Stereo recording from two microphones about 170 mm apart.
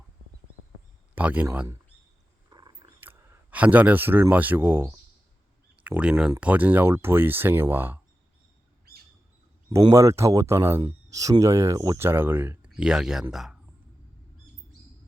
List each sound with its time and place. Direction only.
1.1 s speech: 10° right (ahead or behind)
2.5 s a sound: 25° right (ahead or behind)
3.0 s speech: 10° right (ahead or behind)
9.9 s speech: 20° right (ahead or behind)